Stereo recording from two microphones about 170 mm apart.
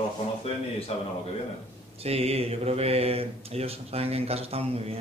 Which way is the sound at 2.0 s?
35° right (ahead or behind).